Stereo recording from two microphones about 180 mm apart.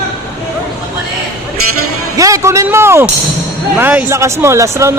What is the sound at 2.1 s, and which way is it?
A man's voice, 20° right (ahead or behind).